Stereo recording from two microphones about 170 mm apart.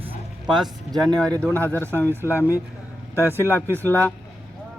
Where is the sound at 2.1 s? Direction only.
15° right (ahead or behind).